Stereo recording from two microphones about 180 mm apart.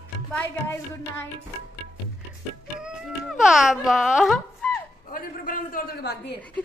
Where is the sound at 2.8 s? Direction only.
5° right (ahead or behind).